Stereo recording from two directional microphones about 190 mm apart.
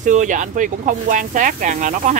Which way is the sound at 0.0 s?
40° right (ahead or behind).